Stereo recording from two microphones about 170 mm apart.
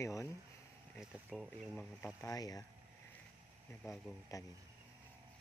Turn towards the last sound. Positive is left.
turn(degrees=20)  # may be behind; listen again after turning